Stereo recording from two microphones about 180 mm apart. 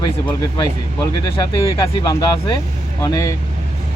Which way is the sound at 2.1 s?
25° left (ahead or behind).